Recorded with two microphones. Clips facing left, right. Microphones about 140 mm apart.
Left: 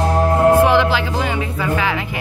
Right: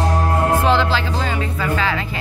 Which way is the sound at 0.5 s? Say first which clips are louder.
Left 3 dB; 15° left (ahead or behind).